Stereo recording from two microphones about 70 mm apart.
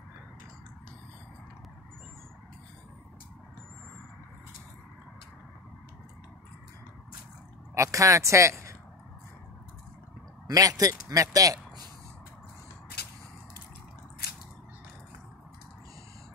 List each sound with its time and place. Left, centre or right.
7.7 s speech: right
10.4 s speech: right